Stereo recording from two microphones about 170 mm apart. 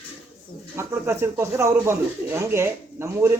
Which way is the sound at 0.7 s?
15° right (ahead or behind).